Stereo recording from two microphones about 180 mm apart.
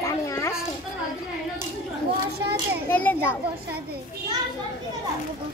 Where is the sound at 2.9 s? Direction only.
10° left (ahead or behind).